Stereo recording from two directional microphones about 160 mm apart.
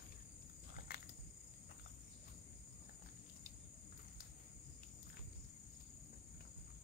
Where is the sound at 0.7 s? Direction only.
70° left (ahead or behind).